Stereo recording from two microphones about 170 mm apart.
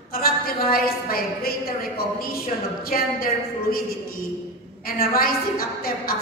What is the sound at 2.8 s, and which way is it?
A woman's voice, 60° left (ahead or behind).